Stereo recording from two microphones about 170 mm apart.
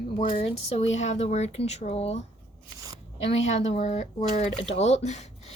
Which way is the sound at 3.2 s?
40° left (ahead or behind).